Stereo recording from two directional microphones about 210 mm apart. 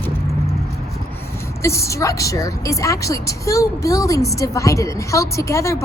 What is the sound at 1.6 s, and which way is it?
A woman's voice, 15° left (ahead or behind).